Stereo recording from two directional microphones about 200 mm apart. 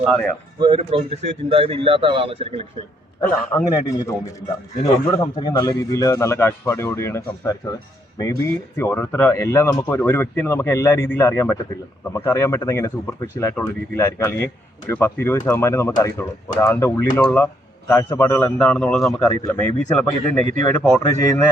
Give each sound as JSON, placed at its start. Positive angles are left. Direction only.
{"t": 0.0, "sound": "speech", "side_deg": 5}
{"t": 0.6, "sound": "a man's voice", "side_deg": -25}
{"t": 3.5, "sound": "speech", "side_deg": 15}